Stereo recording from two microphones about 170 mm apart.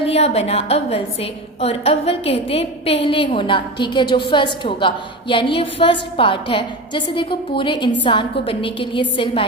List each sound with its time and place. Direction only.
0.0 s a woman's voice: 35° left (ahead or behind)